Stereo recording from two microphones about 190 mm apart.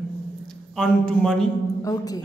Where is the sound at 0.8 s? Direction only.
5° left (ahead or behind).